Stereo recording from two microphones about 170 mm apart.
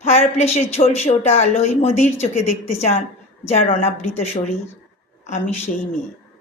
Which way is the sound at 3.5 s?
40° left (ahead or behind).